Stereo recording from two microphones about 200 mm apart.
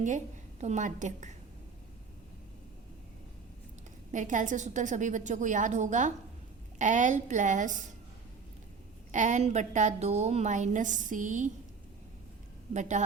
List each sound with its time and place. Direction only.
0.6 s a woman's voice: 35° right (ahead or behind)
4.1 s a woman's voice: 40° right (ahead or behind)
9.1 s a woman's voice: 35° right (ahead or behind)
12.7 s a woman's voice: 35° right (ahead or behind)